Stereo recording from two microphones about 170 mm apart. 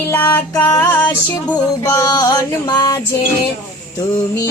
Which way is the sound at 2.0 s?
20° left (ahead or behind).